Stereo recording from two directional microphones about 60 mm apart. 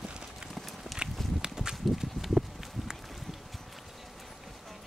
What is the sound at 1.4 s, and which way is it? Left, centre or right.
Walk, centre.